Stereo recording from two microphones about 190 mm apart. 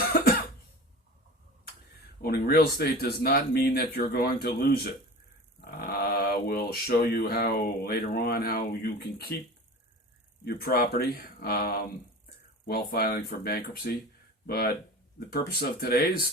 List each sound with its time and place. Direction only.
2.2 s speech: 50° left (ahead or behind)
10.4 s speech: 50° left (ahead or behind)